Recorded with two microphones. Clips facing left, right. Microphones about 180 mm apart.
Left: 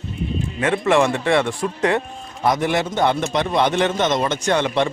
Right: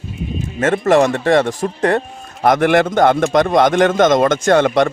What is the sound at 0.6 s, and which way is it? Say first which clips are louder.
A man's voice: right 5 dB; 45° right (ahead or behind).